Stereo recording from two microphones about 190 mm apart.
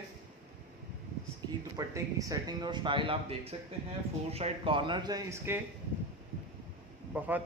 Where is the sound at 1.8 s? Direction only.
20° right (ahead or behind).